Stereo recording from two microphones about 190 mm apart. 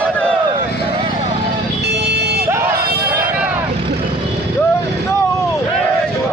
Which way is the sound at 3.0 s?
10° right (ahead or behind).